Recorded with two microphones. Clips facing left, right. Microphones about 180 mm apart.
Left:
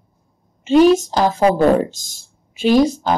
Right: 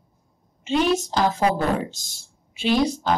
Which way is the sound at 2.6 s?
45° left (ahead or behind).